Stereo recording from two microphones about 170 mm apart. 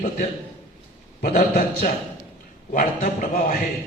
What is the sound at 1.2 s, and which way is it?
A man's voice, 60° left (ahead or behind).